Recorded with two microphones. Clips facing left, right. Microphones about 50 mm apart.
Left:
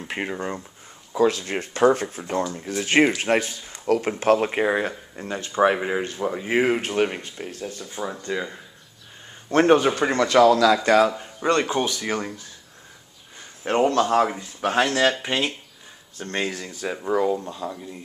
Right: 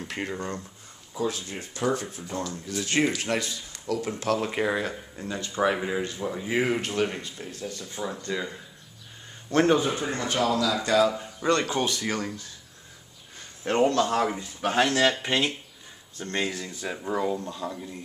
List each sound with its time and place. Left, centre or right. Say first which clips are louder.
0.1 s speech: left 5 dB; left
1.1 s speech: left 9 dB; left
3.8 s speech: left 8 dB; left
4.1 s speech: left 6 dB; left; by 8.5 s centre
9.5 s speech: left 5 dB; left
9.8 s speech: left 7 dB; left
10.8 s speech: left 4 dB; left
11.1 s speech: left 3 dB; left
13.7 s speech: left 3 dB; centre
16.2 s speech: left 2 dB; left
16.9 s speech: left 6 dB; centre
17.6 s a man's voice: left 2 dB; centre